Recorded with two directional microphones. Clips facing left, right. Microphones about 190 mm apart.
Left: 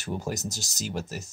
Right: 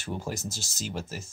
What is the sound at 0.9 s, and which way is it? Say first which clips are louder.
Speech: left 2 dB; centre (ahead or behind).